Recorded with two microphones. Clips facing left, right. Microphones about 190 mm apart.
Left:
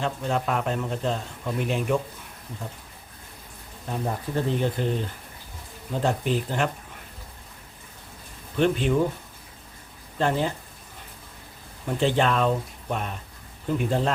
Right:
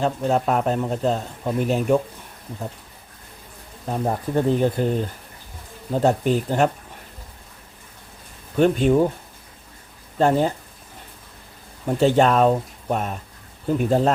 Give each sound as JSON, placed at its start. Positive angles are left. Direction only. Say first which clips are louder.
{"t": 0.0, "sound": "a man's voice", "louder": "right 6 dB", "side_deg": -40}
{"t": 3.8, "sound": "speech", "louder": "right 5 dB", "side_deg": -45}
{"t": 5.9, "sound": "speech", "louder": "right 6 dB", "side_deg": -45}
{"t": 8.5, "sound": "speech", "louder": "right 5 dB", "side_deg": -45}
{"t": 10.2, "sound": "speech", "louder": "right 6 dB", "side_deg": -45}
{"t": 11.9, "sound": "a man's voice", "louder": "right 6 dB", "side_deg": -45}